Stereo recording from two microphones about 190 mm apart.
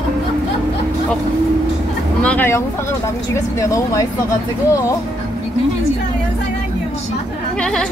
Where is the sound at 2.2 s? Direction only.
10° left (ahead or behind).